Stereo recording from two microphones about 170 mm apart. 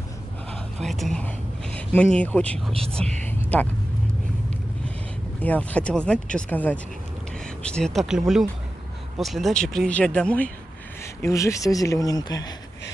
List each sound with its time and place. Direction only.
0.5 s speech: centre (ahead or behind)
5.4 s speech: 10° left (ahead or behind)
11.2 s speech: 20° left (ahead or behind)